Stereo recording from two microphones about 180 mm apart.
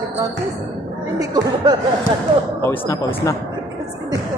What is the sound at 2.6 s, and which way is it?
Speech, 15° left (ahead or behind).